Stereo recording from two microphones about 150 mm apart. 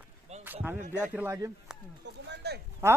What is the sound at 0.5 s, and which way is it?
Speech, 5° right (ahead or behind).